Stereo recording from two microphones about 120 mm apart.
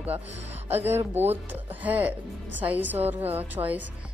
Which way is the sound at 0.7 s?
20° right (ahead or behind).